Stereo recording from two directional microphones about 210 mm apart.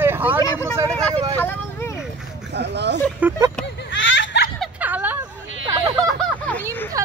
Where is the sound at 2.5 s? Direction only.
55° right (ahead or behind).